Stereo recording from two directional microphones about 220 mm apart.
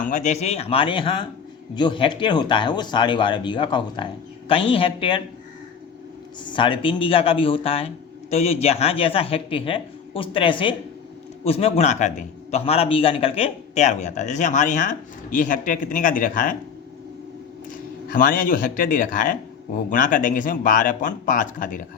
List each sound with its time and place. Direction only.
0.0 s speech: 35° left (ahead or behind)
6.4 s a man's voice: 20° left (ahead or behind); by 16.6 s 35° left (ahead or behind)
18.1 s a man's voice: 40° left (ahead or behind)